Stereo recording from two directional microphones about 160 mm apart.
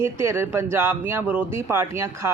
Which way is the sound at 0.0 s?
15° right (ahead or behind).